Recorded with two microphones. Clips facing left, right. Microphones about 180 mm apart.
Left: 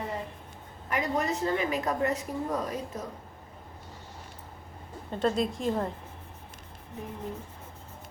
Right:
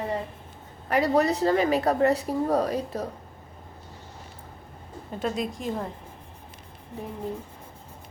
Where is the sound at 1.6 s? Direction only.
70° right (ahead or behind).